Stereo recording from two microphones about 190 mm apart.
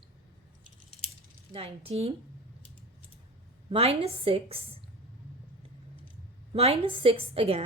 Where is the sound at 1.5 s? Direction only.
30° right (ahead or behind).